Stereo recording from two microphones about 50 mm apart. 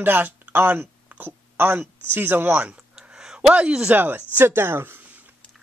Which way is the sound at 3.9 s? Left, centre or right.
Right.